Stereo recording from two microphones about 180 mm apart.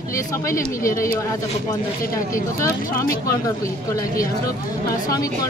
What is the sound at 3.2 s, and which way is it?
A woman's voice, 15° left (ahead or behind).